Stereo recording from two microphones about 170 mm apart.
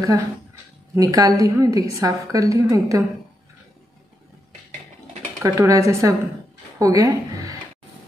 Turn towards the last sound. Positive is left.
turn(degrees=-20)  # may be behind; listen again after turning